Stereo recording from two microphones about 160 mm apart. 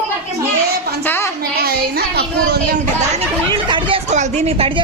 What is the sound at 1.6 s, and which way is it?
Speech, 75° right (ahead or behind).